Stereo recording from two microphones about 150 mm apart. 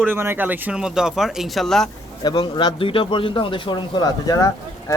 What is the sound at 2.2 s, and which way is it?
Speech, 30° left (ahead or behind).